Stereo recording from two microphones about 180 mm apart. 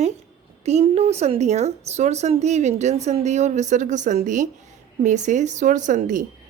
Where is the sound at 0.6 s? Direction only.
35° right (ahead or behind).